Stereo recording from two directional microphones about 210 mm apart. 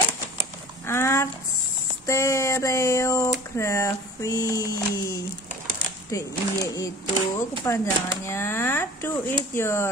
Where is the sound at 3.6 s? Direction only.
15° left (ahead or behind).